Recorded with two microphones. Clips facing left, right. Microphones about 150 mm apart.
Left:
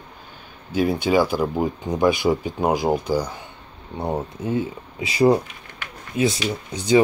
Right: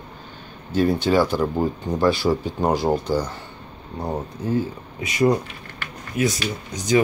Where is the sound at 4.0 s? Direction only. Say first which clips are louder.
Left 2 dB; 25° left (ahead or behind).